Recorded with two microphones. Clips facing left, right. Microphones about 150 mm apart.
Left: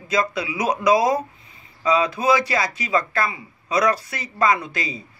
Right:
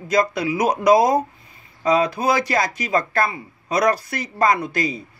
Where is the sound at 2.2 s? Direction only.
35° right (ahead or behind).